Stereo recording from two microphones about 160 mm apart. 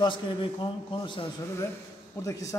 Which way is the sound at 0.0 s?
30° left (ahead or behind).